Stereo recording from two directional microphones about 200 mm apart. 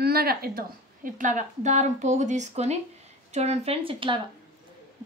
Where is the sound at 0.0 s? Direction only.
50° right (ahead or behind).